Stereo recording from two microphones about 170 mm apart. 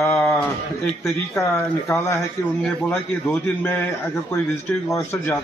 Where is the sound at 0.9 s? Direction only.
15° left (ahead or behind).